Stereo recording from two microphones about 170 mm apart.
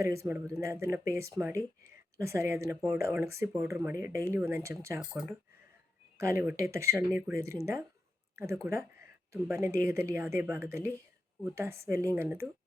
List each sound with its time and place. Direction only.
0.0 s speech: 15° right (ahead or behind)
4.9 s speech: centre (ahead or behind)
6.1 s speech: 15° right (ahead or behind)